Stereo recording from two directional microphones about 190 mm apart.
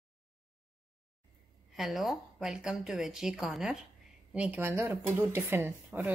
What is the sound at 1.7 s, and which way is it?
A woman's voice, centre (ahead or behind).